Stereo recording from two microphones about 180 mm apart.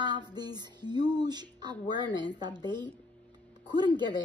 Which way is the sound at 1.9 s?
25° right (ahead or behind).